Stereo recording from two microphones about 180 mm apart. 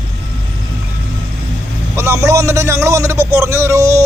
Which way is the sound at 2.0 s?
15° right (ahead or behind).